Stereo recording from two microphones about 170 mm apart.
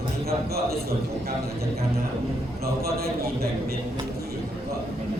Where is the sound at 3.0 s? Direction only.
65° right (ahead or behind).